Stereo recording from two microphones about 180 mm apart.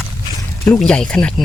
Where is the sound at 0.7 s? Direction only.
5° left (ahead or behind).